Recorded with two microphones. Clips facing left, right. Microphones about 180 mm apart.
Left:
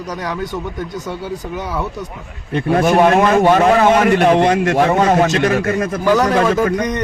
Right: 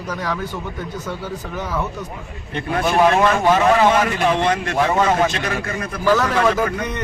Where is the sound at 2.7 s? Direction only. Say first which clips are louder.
Left 4 dB; 50° left (ahead or behind); by 4.3 s 65° left (ahead or behind).